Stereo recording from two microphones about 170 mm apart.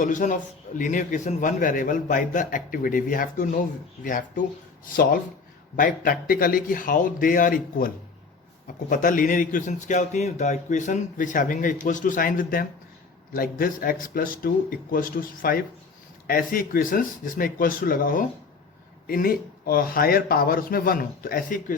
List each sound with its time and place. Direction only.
0.0 s a man's voice: 50° left (ahead or behind)